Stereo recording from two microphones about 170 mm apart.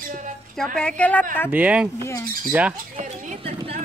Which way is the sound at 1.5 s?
10° right (ahead or behind).